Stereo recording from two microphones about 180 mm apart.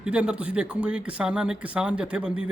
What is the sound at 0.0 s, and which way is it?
Speech, 5° right (ahead or behind).